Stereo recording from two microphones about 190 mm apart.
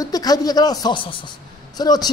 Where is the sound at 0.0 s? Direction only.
20° left (ahead or behind).